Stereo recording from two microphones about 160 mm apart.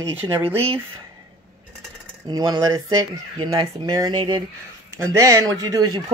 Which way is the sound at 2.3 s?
25° right (ahead or behind).